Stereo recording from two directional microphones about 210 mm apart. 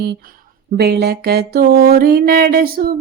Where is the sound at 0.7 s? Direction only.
50° right (ahead or behind).